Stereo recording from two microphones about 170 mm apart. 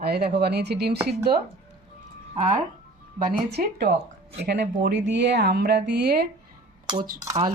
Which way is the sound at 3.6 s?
50° right (ahead or behind).